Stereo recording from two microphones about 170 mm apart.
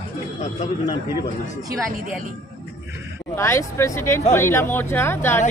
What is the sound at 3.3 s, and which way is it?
Speech, 15° left (ahead or behind).